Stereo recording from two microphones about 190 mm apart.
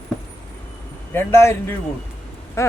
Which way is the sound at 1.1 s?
10° left (ahead or behind).